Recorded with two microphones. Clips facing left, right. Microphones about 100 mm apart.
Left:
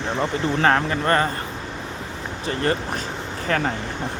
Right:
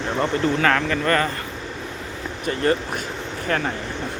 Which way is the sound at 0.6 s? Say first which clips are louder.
Left 1 dB; 30° left (ahead or behind).